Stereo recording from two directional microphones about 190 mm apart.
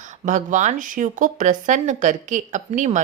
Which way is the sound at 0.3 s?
40° right (ahead or behind).